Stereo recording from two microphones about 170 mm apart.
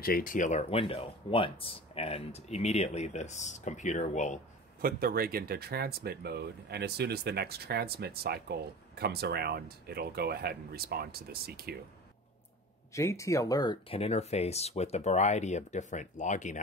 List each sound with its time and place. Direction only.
0.0 s speech: 60° left (ahead or behind)
4.8 s speech: 60° right (ahead or behind)
12.9 s speech: 20° left (ahead or behind); by 16.5 s 45° left (ahead or behind)